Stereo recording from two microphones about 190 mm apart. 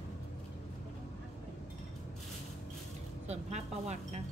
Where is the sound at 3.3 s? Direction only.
35° right (ahead or behind).